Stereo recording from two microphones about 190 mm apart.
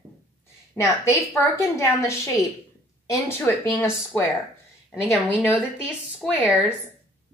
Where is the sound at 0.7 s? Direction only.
15° left (ahead or behind).